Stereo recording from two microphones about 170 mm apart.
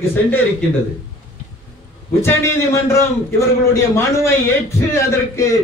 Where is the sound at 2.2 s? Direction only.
15° left (ahead or behind).